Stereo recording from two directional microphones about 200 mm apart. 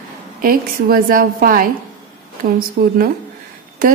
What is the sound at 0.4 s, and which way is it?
A woman's voice, 45° right (ahead or behind).